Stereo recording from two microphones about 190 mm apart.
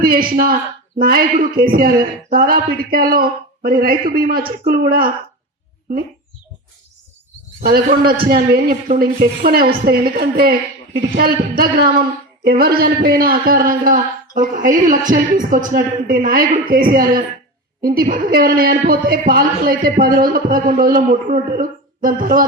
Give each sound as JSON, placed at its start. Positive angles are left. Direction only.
{"t": 0.0, "sound": "a man's voice", "side_deg": -50}
{"t": 8.0, "sound": "a man's voice", "side_deg": -50}